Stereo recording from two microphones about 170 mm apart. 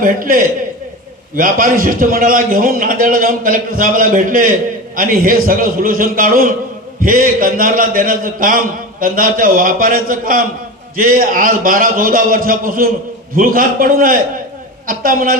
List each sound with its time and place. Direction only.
0.0 s a man's voice: 55° right (ahead or behind)